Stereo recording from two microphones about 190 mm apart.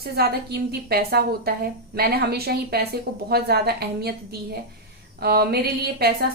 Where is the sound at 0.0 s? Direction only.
55° right (ahead or behind).